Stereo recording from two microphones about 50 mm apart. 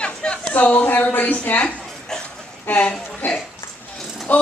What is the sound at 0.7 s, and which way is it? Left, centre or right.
Speech, left.